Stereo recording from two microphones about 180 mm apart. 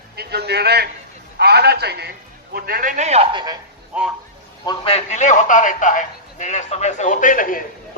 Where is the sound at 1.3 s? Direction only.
65° right (ahead or behind); by 3.5 s 25° right (ahead or behind).